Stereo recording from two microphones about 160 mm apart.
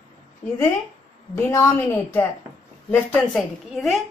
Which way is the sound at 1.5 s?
15° left (ahead or behind).